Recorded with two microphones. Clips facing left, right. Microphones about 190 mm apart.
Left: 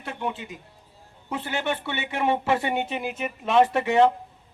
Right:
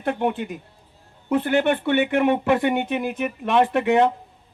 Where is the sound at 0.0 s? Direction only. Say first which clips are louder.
Right 8 dB; 55° right (ahead or behind).